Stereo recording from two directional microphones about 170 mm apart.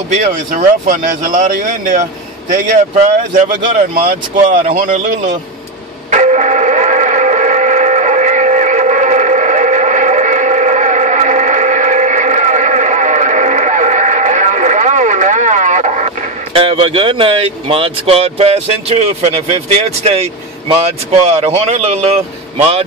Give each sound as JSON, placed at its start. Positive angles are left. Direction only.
{"t": 0.6, "sound": "speech", "side_deg": -50}
{"t": 6.0, "sound": "a sound", "side_deg": -45}
{"t": 16.5, "sound": "speech", "side_deg": -35}
{"t": 21.3, "sound": "speech", "side_deg": -40}